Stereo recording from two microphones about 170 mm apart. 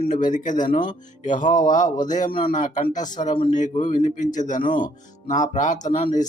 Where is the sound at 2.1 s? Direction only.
45° left (ahead or behind).